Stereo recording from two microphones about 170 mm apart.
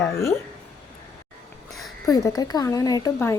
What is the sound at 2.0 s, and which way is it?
Speech, 20° left (ahead or behind).